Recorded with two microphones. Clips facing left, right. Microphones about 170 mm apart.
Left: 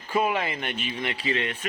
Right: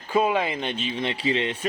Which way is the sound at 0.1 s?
20° right (ahead or behind).